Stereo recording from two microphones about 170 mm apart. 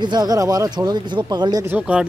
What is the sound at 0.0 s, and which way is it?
Speech, 25° right (ahead or behind).